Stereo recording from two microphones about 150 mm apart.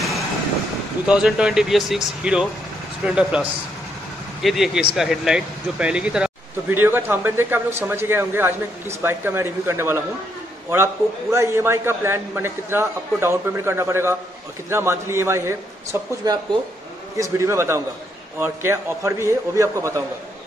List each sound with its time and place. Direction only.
1.0 s a man's voice: 5° right (ahead or behind)